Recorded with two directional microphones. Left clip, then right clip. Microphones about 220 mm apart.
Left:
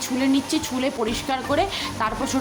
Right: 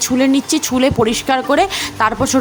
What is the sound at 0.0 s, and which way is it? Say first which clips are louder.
Speech: right 8 dB; 30° right (ahead or behind).